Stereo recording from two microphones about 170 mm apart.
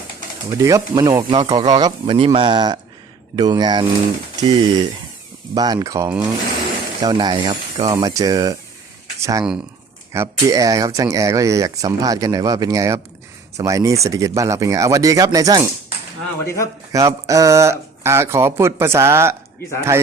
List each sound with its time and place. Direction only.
0.6 s speech: 20° right (ahead or behind)
7.0 s speech: 25° right (ahead or behind)
16.9 s speech: 20° right (ahead or behind)